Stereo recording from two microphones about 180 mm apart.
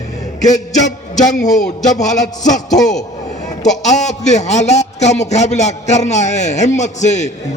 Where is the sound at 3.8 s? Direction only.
40° left (ahead or behind).